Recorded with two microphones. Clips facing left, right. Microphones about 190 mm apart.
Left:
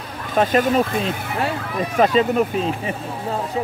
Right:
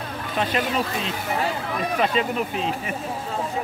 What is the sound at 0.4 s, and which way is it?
Speech, 45° left (ahead or behind).